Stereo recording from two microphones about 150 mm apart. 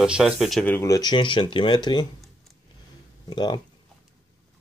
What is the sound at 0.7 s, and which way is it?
Speech, 20° left (ahead or behind).